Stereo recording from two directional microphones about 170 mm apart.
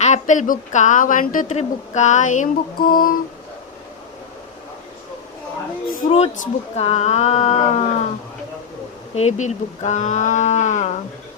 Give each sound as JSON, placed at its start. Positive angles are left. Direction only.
{"t": 0.0, "sound": "a woman's voice", "side_deg": 45}
{"t": 6.1, "sound": "speech", "side_deg": 35}
{"t": 9.1, "sound": "a woman's voice", "side_deg": 40}